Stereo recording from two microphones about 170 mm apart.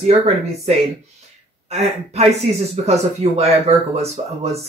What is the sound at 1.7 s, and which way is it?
Speech, 40° right (ahead or behind).